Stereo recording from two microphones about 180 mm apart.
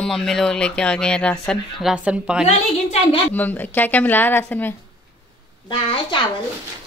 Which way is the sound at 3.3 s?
10° left (ahead or behind).